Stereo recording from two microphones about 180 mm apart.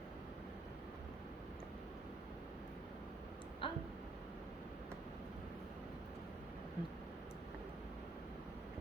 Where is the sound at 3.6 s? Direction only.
30° left (ahead or behind).